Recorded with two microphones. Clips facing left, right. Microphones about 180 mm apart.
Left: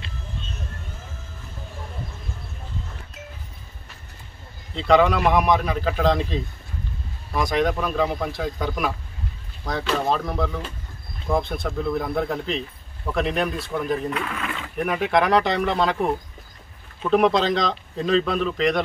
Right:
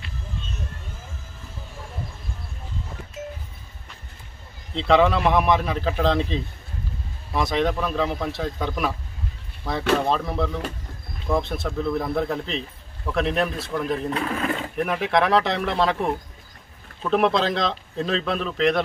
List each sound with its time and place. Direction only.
4.7 s speech: centre (ahead or behind)
14.1 s speech: 35° right (ahead or behind)
14.8 s speech: centre (ahead or behind)
17.0 s speech: centre (ahead or behind)